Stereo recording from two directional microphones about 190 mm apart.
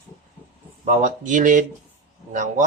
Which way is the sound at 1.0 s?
40° right (ahead or behind).